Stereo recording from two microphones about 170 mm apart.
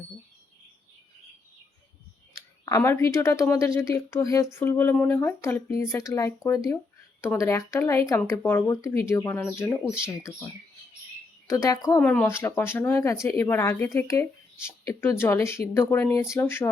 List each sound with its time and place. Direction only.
2.6 s speech: 15° left (ahead or behind)
11.4 s speech: 20° left (ahead or behind)